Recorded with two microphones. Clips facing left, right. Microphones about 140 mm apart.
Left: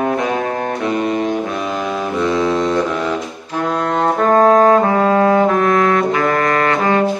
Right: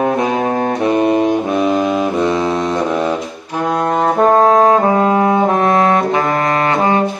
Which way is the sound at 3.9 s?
20° right (ahead or behind).